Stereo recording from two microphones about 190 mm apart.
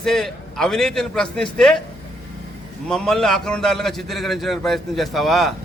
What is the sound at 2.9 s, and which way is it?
A man's voice, 5° left (ahead or behind).